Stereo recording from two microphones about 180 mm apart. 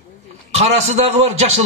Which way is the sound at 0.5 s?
35° right (ahead or behind).